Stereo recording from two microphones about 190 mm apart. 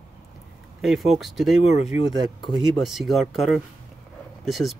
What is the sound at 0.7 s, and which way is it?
Speech, centre (ahead or behind).